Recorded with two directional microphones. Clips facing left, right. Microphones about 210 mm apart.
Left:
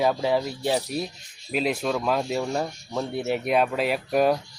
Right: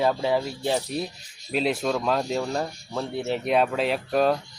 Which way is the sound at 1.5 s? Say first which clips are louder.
Right 1 dB; 5° left (ahead or behind).